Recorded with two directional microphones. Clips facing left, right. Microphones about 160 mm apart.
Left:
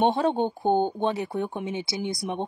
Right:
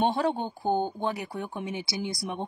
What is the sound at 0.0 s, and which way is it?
Speech, 20° left (ahead or behind).